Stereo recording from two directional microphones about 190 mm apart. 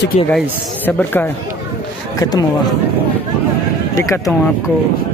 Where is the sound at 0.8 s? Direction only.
10° left (ahead or behind).